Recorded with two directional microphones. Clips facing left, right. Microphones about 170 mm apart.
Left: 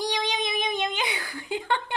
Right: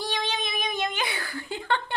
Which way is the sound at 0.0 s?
15° left (ahead or behind).